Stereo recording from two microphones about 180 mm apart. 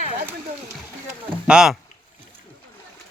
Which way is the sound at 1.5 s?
5° right (ahead or behind).